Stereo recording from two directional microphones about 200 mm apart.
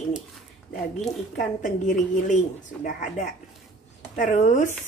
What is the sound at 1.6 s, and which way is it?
Speech, 40° left (ahead or behind).